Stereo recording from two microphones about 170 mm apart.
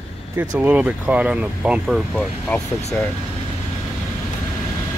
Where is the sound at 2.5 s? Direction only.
15° left (ahead or behind).